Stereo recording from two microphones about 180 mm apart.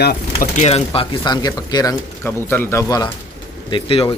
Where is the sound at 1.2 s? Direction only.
25° left (ahead or behind).